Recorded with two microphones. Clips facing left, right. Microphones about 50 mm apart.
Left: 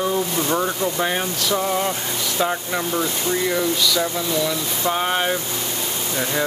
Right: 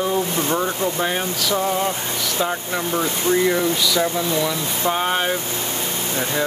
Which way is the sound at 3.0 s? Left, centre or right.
Centre.